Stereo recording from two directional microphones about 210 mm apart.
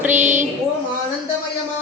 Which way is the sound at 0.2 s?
35° right (ahead or behind).